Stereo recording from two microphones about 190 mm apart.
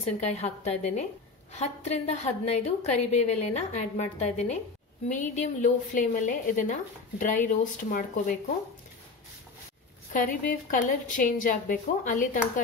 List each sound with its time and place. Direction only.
0.0 s a woman's voice: 35° left (ahead or behind)
10.7 s a woman's voice: 45° left (ahead or behind)